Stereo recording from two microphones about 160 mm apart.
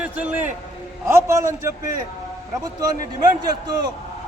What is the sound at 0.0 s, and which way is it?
A man's voice, 10° right (ahead or behind).